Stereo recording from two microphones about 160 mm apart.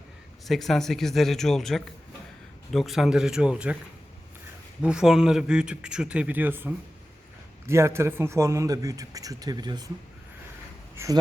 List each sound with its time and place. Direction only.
0.4 s speech: centre (ahead or behind)
4.8 s speech: 5° right (ahead or behind)
7.7 s speech: 15° right (ahead or behind)
10.9 s speech: 20° right (ahead or behind)